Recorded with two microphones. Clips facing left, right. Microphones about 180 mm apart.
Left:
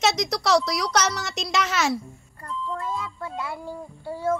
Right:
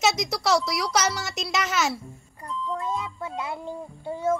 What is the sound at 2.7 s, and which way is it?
Child singing, 20° right (ahead or behind).